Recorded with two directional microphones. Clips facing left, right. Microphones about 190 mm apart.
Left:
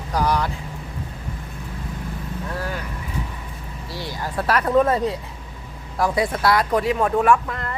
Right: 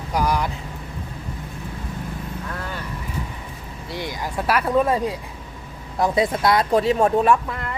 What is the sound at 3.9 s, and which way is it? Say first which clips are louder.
Speech: right 1 dB; 15° right (ahead or behind).